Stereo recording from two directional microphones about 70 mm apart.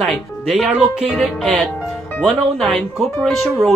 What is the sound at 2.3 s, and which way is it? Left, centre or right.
Speech, centre.